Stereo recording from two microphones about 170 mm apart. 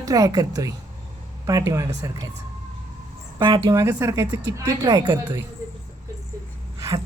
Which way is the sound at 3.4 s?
25° right (ahead or behind).